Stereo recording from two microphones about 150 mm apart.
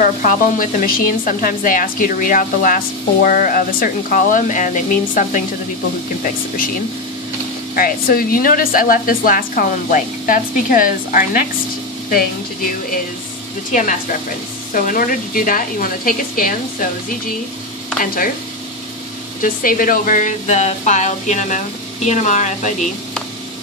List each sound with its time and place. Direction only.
0.0 s speech: 65° left (ahead or behind)
7.7 s speech: 75° left (ahead or behind)
14.7 s speech: 65° left (ahead or behind)
19.4 s speech: 65° left (ahead or behind)